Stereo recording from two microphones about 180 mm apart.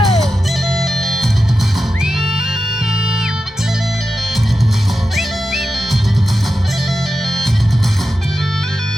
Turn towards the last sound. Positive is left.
turn(degrees=0)  # may be behind; listen again after turning